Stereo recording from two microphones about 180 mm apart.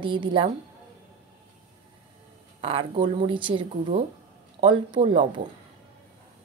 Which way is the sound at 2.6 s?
30° right (ahead or behind).